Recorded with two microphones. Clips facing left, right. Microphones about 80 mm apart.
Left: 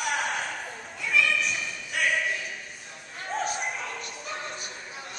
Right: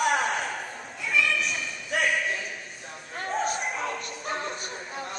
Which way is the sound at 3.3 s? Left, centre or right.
Centre.